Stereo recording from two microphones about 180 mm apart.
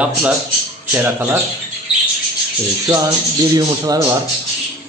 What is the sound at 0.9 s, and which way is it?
Speech, 10° right (ahead or behind).